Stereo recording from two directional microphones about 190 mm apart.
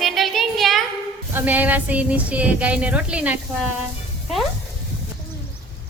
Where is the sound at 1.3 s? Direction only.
10° right (ahead or behind).